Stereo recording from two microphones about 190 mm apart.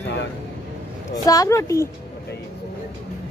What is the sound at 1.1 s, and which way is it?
Speech, 20° left (ahead or behind).